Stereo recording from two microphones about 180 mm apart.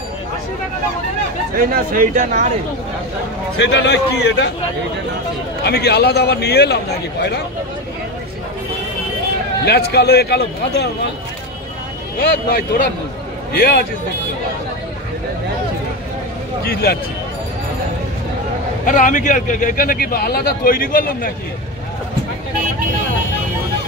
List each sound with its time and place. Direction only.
1.7 s speech: 50° right (ahead or behind)
3.6 s a man's voice: 70° left (ahead or behind)
5.6 s a man's voice: 65° left (ahead or behind)
9.7 s a man's voice: 60° left (ahead or behind)
12.2 s a man's voice: 55° left (ahead or behind)
16.6 s a man's voice: 60° left (ahead or behind)
18.9 s speech: 45° left (ahead or behind)